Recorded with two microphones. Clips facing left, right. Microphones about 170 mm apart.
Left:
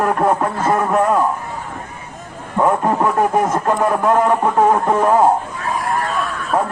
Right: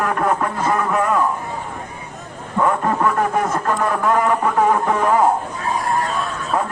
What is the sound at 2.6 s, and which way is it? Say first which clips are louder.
Speech: left 2 dB; 15° left (ahead or behind).